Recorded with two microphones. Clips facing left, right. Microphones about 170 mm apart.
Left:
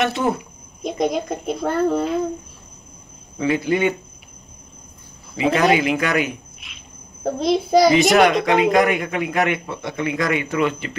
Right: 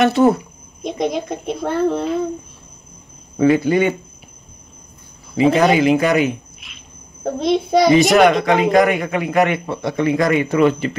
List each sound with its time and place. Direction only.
0.2 s speech: 45° right (ahead or behind)
0.8 s a child's voice: centre (ahead or behind)
3.3 s speech: 45° right (ahead or behind)
5.3 s a child's voice: centre (ahead or behind)
6.0 s a sound: centre (ahead or behind)
7.2 s a child's voice: centre (ahead or behind)
9.5 s speech: 35° right (ahead or behind)